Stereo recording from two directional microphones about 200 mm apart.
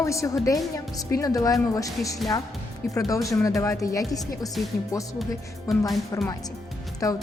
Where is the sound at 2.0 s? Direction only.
Centre (ahead or behind).